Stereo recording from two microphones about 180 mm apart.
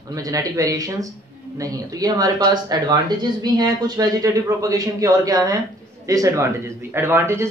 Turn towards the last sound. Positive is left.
turn(degrees=-15)  # may be behind; listen again after turning